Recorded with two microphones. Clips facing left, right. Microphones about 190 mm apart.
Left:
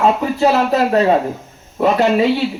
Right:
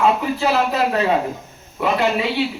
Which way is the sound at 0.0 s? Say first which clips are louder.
Left 4 dB; 40° left (ahead or behind).